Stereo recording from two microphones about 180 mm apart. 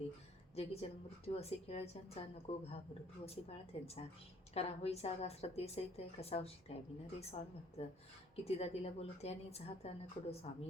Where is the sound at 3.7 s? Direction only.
35° left (ahead or behind).